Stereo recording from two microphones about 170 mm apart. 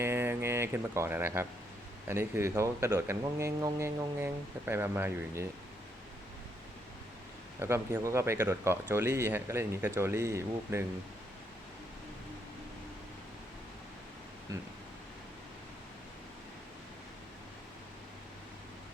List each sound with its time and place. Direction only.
0.0 s speech: 15° right (ahead or behind)
7.6 s speech: 15° right (ahead or behind)
14.5 s speech: 20° right (ahead or behind)